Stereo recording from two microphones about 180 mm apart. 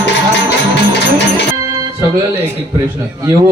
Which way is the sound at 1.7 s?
15° right (ahead or behind).